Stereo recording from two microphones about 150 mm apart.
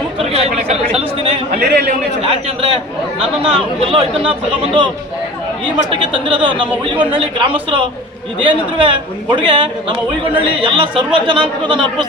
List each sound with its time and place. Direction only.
0.2 s a sound: 40° right (ahead or behind)
1.5 s a man's voice: 80° right
3.4 s speech: 35° right (ahead or behind)
5.9 s speech: 35° right (ahead or behind)